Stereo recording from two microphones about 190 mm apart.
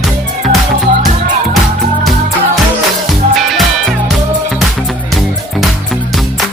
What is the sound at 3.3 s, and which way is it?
Music, centre (ahead or behind).